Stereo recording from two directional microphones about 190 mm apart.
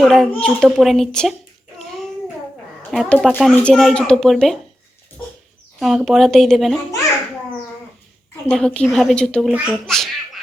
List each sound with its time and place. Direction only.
0.0 s speech: centre (ahead or behind)
1.9 s child singing: centre (ahead or behind)
2.9 s speech: 5° left (ahead or behind)
5.8 s speech: centre (ahead or behind)
8.4 s speech: 5° left (ahead or behind)